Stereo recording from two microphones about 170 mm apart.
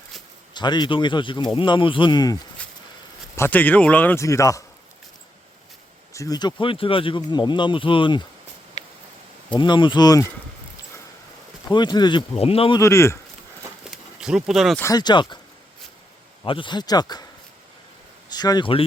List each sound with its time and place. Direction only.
0.5 s speech: 25° left (ahead or behind)
3.3 s a man's voice: 10° left (ahead or behind)
6.1 s speech: 20° left (ahead or behind)
9.6 s speech: 30° left (ahead or behind)
11.7 s speech: 25° left (ahead or behind)
12.8 s a man's voice: 15° left (ahead or behind)
13.8 s a sound: 5° right (ahead or behind)
14.8 s speech: 20° left (ahead or behind)
16.4 s speech: 30° left (ahead or behind)
18.3 s speech: 25° left (ahead or behind)